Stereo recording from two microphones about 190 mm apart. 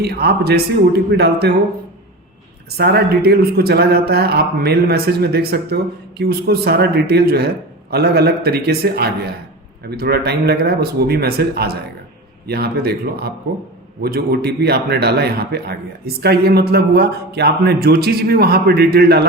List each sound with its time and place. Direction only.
0.0 s speech: 55° right (ahead or behind)
2.6 s speech: 60° right (ahead or behind)